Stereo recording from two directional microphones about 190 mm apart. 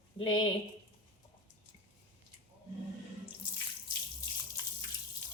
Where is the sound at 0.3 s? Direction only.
90° left.